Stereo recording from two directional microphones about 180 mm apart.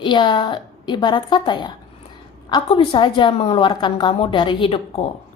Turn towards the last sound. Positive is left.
turn(degrees=30)  # may be behind; listen again after turning